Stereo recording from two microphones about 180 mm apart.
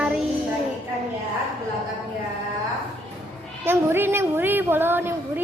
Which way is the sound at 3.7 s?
10° right (ahead or behind).